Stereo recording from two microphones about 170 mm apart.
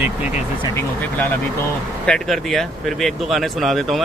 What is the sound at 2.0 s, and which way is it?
Speech, 5° left (ahead or behind).